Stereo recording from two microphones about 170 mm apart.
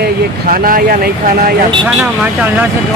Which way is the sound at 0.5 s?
55° right (ahead or behind).